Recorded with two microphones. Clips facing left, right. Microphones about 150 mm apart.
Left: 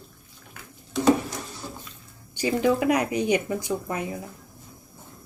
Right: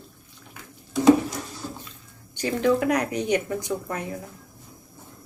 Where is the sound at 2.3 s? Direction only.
10° left (ahead or behind).